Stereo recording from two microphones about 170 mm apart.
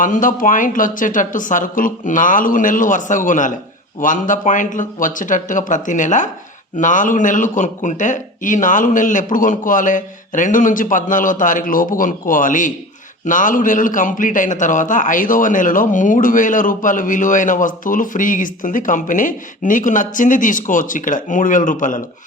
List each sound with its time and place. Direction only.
0.0 s a man's voice: 50° left (ahead or behind)